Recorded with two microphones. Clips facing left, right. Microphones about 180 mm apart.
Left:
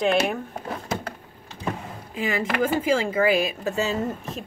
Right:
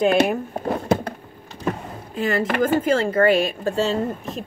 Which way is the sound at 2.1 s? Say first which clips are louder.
Right 4 dB; centre (ahead or behind).